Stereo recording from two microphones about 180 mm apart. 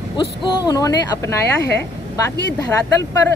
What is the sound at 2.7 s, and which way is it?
Speech, 15° left (ahead or behind).